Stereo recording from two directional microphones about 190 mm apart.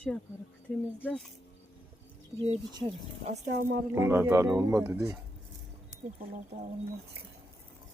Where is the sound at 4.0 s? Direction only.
15° right (ahead or behind).